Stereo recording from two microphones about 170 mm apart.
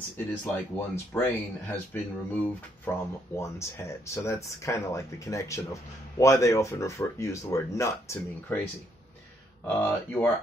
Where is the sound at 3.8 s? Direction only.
10° left (ahead or behind).